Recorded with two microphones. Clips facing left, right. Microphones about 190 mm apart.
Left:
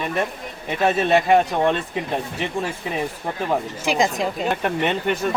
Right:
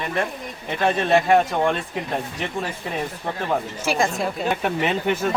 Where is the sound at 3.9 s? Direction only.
15° left (ahead or behind).